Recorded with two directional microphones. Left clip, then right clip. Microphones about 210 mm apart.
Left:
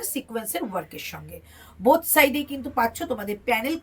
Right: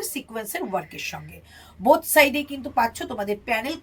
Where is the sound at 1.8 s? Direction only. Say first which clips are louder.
Right 1 dB; 15° right (ahead or behind).